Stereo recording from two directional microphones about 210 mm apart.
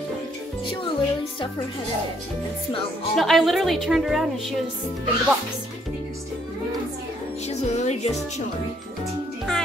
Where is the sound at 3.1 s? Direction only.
Centre (ahead or behind).